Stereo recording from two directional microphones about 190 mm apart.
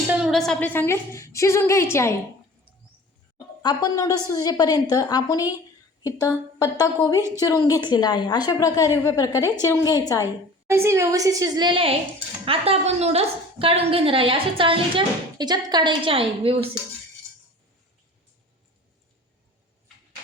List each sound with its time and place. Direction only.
0.1 s a woman's voice: centre (ahead or behind); by 2.1 s 15° left (ahead or behind)
3.3 s a woman's voice: 20° left (ahead or behind)
10.7 s a woman's voice: 15° right (ahead or behind); by 16.6 s 30° right (ahead or behind)